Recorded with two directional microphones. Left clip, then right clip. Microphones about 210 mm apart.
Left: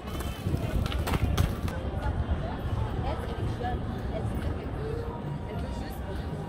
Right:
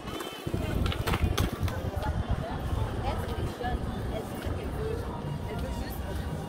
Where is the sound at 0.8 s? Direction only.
55° left (ahead or behind).